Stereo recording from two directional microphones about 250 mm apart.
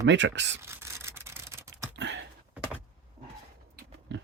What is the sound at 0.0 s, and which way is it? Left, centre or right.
Speech, right.